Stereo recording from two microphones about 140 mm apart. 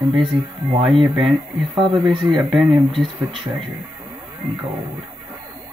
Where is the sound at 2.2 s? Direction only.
Centre (ahead or behind).